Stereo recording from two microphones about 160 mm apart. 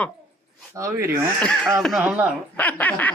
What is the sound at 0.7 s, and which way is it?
Speech, 20° right (ahead or behind).